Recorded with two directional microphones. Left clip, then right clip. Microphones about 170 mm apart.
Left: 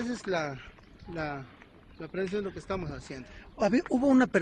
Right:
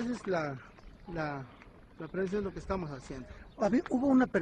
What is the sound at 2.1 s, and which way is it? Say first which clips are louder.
Speech: left 2 dB; 15° right (ahead or behind).